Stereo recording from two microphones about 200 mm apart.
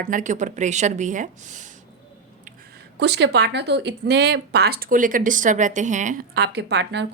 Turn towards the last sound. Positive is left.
turn(degrees=-60)  # may be behind; listen again after turning